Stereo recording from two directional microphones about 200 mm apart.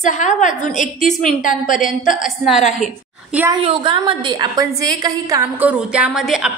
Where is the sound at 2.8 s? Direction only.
5° right (ahead or behind).